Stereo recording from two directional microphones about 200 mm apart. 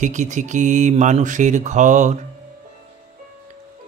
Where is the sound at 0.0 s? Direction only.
40° right (ahead or behind).